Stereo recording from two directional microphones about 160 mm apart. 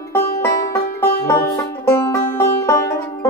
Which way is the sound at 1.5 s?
15° left (ahead or behind).